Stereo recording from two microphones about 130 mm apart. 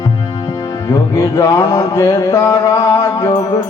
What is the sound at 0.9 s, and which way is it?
Music, 25° left (ahead or behind).